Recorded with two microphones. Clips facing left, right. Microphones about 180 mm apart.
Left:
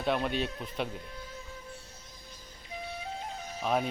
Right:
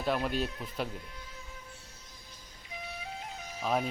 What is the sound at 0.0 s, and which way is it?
Speech, centre (ahead or behind).